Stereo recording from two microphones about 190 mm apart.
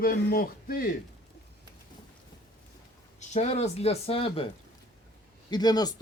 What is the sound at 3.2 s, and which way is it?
Speech, 35° left (ahead or behind).